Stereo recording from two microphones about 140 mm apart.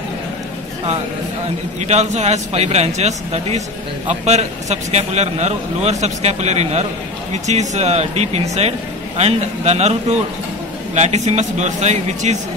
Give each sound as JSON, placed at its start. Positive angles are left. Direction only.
{"t": 1.9, "sound": "a man's voice", "side_deg": -55}